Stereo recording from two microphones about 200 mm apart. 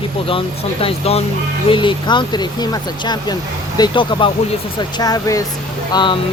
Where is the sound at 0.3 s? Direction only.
25° left (ahead or behind).